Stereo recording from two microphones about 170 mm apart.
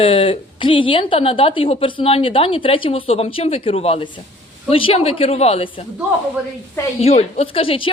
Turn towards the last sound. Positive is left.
turn(degrees=30)  # may be behind; listen again after turning